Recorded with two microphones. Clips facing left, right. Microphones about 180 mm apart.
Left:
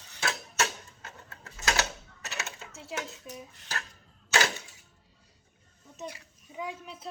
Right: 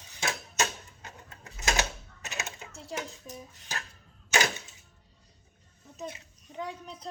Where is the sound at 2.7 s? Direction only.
5° left (ahead or behind).